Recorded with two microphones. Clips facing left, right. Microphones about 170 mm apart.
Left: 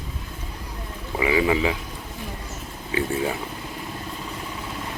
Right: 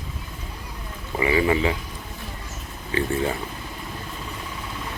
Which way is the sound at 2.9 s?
5° left (ahead or behind).